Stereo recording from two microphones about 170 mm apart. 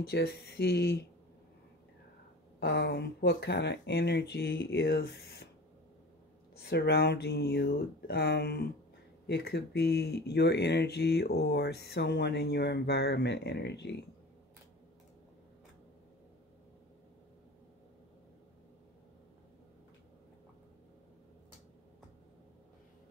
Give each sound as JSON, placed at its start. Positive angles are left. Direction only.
{"t": 0.0, "sound": "speech", "side_deg": 75}
{"t": 2.6, "sound": "speech", "side_deg": 80}
{"t": 6.5, "sound": "speech", "side_deg": 70}